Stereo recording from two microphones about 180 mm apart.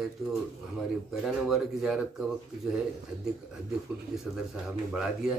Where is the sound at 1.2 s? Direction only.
Centre (ahead or behind).